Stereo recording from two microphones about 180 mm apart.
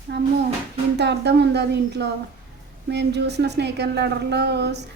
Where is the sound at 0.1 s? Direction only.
70° right (ahead or behind).